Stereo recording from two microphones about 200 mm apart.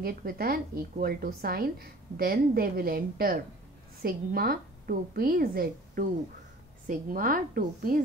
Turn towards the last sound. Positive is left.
turn(degrees=-45)  # may be behind; listen again after turning